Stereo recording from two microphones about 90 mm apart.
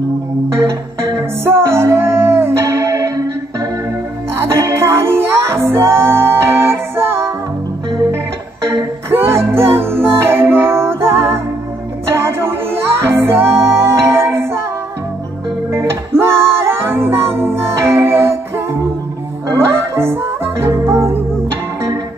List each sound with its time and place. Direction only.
1.4 s music: 30° right (ahead or behind)
4.5 s music: 30° right (ahead or behind)
9.1 s music: 30° right (ahead or behind)
15.7 s music: 30° right (ahead or behind)
19.5 s music: 25° right (ahead or behind)